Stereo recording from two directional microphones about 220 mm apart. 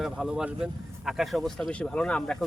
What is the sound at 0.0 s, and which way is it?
Speech, centre (ahead or behind).